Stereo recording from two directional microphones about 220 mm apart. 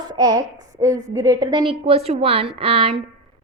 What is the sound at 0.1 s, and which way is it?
A woman's voice, 15° right (ahead or behind).